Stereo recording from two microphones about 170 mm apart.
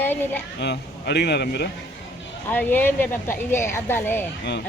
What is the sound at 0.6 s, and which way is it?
Speech, 85° left.